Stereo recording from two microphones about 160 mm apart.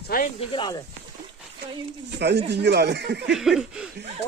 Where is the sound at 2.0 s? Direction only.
90° right.